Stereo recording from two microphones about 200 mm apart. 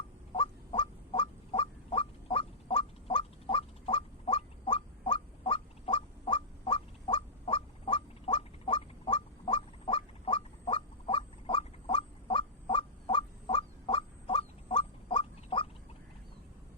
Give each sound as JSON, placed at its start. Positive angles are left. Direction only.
{"t": 0.3, "sound": "goose", "side_deg": 25}